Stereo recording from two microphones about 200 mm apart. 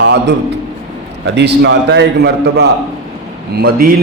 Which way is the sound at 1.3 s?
60° right (ahead or behind).